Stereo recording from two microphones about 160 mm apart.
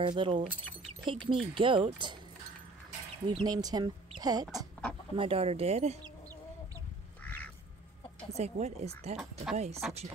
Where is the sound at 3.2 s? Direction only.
25° right (ahead or behind).